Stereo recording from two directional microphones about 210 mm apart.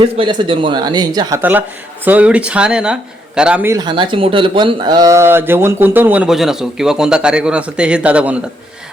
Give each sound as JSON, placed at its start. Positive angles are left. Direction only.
{"t": 0.0, "sound": "speech", "side_deg": -25}
{"t": 1.4, "sound": "speech", "side_deg": -10}